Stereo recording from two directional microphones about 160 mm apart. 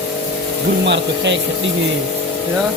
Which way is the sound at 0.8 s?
90° right.